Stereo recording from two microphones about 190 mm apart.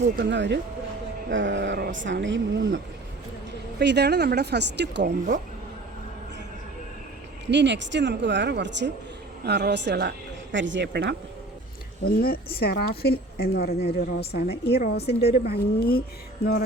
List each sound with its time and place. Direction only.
0.0 s a woman's voice: 70° right (ahead or behind)
3.8 s a woman's voice: 60° right (ahead or behind)
5.0 s speech: 40° right (ahead or behind)
7.4 s a woman's voice: 65° right (ahead or behind)
12.0 s a woman's voice: 50° left (ahead or behind)